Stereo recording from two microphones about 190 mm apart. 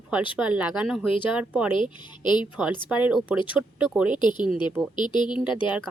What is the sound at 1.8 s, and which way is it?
Speech, 25° left (ahead or behind).